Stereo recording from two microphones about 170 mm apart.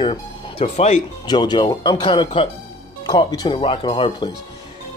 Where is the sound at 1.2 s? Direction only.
25° left (ahead or behind).